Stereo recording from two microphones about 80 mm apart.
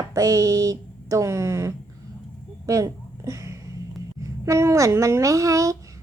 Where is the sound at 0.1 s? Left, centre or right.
Right.